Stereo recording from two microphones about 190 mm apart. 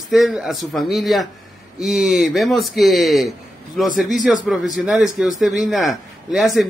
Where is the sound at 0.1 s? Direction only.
Centre (ahead or behind).